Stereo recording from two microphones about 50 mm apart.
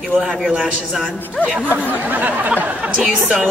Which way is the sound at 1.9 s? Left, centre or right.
Right.